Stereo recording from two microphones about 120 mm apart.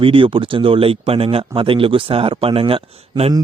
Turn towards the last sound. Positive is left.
turn(degrees=-45)  # may be behind; listen again after turning